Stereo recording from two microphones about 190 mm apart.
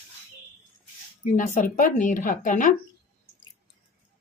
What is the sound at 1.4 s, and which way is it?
Speech, 45° left (ahead or behind).